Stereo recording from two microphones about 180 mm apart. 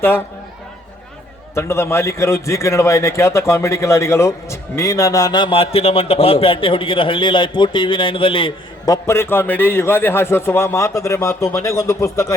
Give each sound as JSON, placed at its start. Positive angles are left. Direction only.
{"t": 1.5, "sound": "a man's voice", "side_deg": 15}
{"t": 9.0, "sound": "a man's voice", "side_deg": 15}